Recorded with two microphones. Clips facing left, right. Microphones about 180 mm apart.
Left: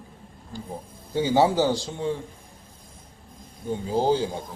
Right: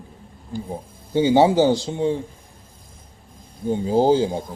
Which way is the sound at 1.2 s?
20° right (ahead or behind).